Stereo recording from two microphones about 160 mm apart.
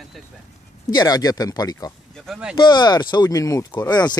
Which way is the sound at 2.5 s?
25° left (ahead or behind).